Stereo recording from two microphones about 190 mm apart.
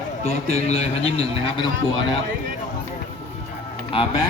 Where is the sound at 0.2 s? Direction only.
35° left (ahead or behind).